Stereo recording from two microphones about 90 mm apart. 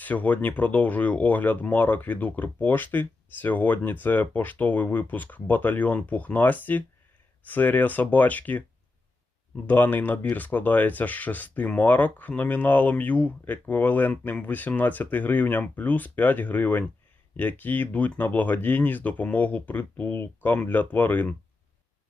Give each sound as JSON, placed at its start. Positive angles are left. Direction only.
{"t": 0.0, "sound": "speech", "side_deg": 20}
{"t": 9.6, "sound": "speech", "side_deg": 20}